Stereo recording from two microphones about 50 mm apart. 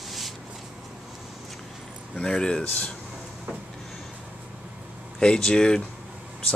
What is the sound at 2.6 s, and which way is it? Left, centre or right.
Speech, left.